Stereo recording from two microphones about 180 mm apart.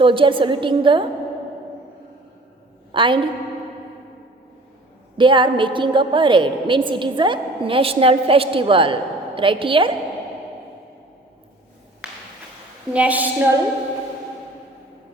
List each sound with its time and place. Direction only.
0.0 s a woman's voice: 30° right (ahead or behind)
2.9 s a woman's voice: 25° right (ahead or behind)
5.1 s a woman's voice: 25° right (ahead or behind)
12.9 s a woman's voice: 10° right (ahead or behind)